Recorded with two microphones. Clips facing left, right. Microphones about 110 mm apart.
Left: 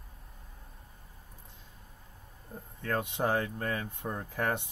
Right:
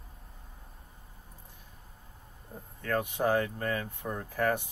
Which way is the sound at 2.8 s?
20° left (ahead or behind).